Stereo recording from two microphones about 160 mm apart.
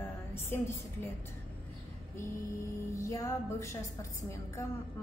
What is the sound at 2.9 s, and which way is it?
Music, 20° left (ahead or behind).